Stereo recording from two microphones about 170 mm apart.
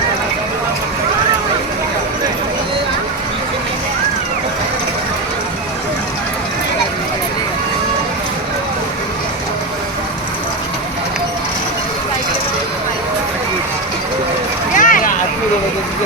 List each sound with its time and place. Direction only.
14.8 s vehicle: 50° left (ahead or behind)